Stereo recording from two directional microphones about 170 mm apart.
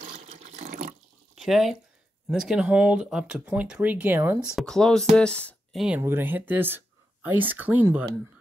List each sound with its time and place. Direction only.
0.1 s water: 40° right (ahead or behind)
1.3 s speech: centre (ahead or behind)
5.9 s speech: 15° right (ahead or behind)